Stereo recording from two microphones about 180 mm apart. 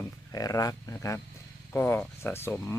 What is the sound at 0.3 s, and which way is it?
Speech, 20° left (ahead or behind).